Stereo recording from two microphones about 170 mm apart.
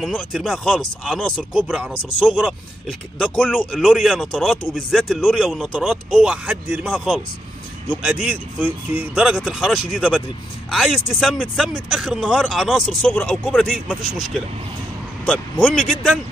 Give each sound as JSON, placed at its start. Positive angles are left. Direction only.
{"t": 0.0, "sound": "speech", "side_deg": 0}
{"t": 7.9, "sound": "speech", "side_deg": -5}